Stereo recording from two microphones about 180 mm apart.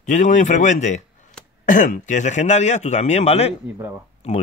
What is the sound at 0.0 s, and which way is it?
Speech, 45° left (ahead or behind).